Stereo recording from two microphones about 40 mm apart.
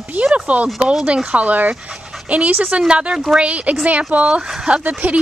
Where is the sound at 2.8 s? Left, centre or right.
Right.